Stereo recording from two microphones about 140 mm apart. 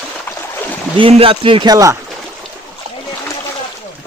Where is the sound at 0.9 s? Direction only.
40° right (ahead or behind); by 2.0 s 25° right (ahead or behind).